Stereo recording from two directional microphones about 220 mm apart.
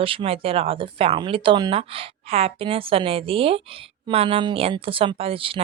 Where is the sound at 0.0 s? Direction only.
25° right (ahead or behind).